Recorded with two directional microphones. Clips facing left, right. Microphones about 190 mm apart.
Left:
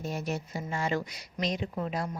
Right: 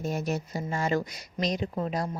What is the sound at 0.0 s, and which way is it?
Speech, 45° right (ahead or behind).